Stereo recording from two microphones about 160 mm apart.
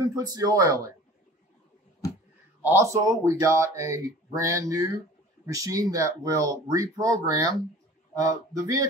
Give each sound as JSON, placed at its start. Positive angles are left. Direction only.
{"t": 0.0, "sound": "speech", "side_deg": -20}
{"t": 2.6, "sound": "speech", "side_deg": -15}